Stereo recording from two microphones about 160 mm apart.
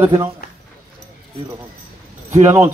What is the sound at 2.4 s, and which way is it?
Speech, 15° right (ahead or behind).